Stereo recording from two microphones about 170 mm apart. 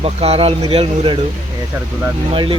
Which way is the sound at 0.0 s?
35° right (ahead or behind).